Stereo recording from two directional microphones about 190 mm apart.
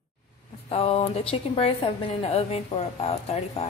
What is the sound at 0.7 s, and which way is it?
A woman's voice, 30° left (ahead or behind).